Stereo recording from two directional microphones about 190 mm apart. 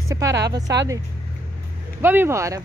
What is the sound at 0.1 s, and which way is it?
Speech, 15° right (ahead or behind).